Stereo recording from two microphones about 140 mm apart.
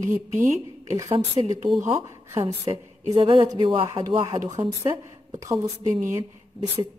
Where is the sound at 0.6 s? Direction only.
25° right (ahead or behind).